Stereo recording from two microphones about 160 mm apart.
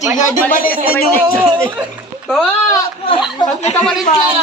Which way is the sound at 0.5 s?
65° left (ahead or behind).